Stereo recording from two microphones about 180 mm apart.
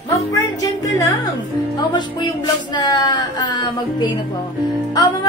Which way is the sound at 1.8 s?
25° left (ahead or behind).